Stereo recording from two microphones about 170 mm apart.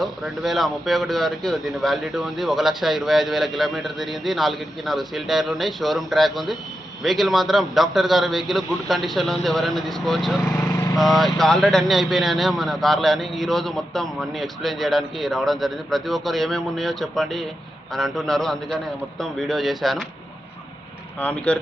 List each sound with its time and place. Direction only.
0.0 s speech: centre (ahead or behind)
10.7 s vehicle: 20° left (ahead or behind)
10.9 s speech: centre (ahead or behind)
21.2 s speech: 5° left (ahead or behind)